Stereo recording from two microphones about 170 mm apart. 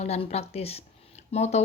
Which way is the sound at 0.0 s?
40° left (ahead or behind).